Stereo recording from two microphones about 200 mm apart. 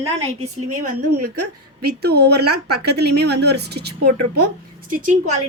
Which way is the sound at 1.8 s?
55° right (ahead or behind).